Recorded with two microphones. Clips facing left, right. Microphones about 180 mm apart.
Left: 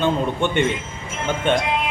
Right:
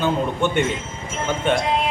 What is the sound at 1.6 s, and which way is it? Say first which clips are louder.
Music: right 2 dB; 35° right (ahead or behind).